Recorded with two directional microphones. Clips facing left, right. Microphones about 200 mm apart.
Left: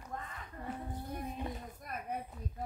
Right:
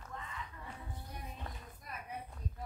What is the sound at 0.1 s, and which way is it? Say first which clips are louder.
Music: left 2 dB; 50° left (ahead or behind).